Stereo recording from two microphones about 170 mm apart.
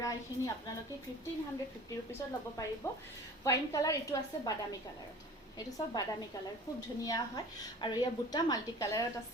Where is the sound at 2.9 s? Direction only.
15° left (ahead or behind).